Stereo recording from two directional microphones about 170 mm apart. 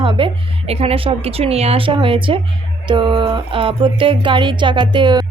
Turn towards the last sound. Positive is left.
turn(degrees=-25)  # may be behind; listen again after turning